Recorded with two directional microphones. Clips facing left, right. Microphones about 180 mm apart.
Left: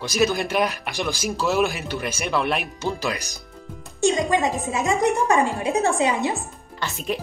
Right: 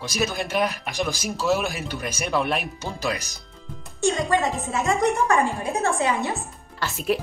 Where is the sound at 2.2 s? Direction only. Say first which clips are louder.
Even; centre (ahead or behind).